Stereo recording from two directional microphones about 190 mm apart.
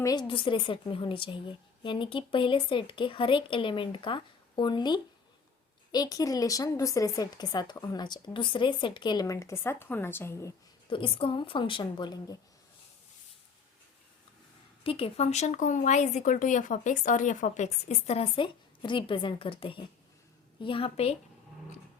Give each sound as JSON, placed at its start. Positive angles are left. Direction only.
{"t": 0.0, "sound": "a woman's voice", "side_deg": 20}
{"t": 10.8, "sound": "a woman's voice", "side_deg": 25}
{"t": 14.8, "sound": "a woman's voice", "side_deg": 30}